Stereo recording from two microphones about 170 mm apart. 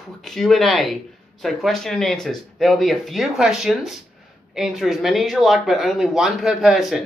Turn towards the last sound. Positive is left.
turn(degrees=0)  # may be behind; listen again after turning